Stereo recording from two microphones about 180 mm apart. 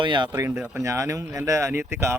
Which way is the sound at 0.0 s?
25° right (ahead or behind).